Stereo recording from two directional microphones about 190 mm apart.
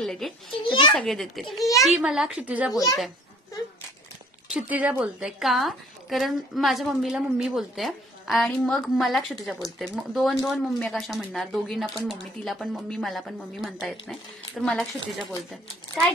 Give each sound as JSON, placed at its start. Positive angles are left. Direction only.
{"t": 0.0, "sound": "a woman's voice", "side_deg": 0}
{"t": 2.7, "sound": "a child's voice", "side_deg": 20}
{"t": 4.5, "sound": "a woman's voice", "side_deg": -5}